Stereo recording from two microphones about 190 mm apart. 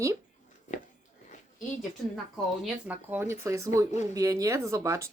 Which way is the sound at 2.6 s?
5° right (ahead or behind).